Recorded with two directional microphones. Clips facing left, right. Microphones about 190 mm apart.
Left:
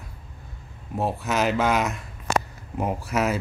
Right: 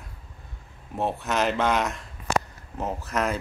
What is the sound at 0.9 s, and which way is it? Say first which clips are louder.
Speech: left 1 dB; centre (ahead or behind).